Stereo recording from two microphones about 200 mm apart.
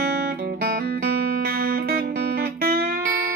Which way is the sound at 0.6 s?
50° right (ahead or behind).